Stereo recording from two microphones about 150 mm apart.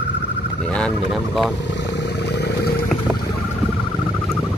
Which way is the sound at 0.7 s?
5° left (ahead or behind).